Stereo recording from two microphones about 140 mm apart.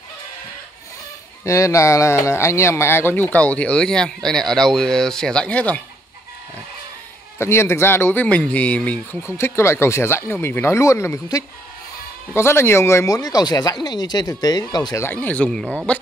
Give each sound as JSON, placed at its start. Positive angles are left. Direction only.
{"t": 1.4, "sound": "speech", "side_deg": 20}
{"t": 7.3, "sound": "speech", "side_deg": 20}
{"t": 12.4, "sound": "speech", "side_deg": 20}
{"t": 15.0, "sound": "speech", "side_deg": 10}